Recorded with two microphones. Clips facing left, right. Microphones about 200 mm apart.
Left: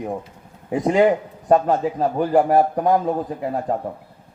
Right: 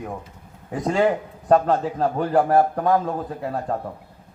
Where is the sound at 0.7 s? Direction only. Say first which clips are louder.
Left 4 dB; 20° left (ahead or behind).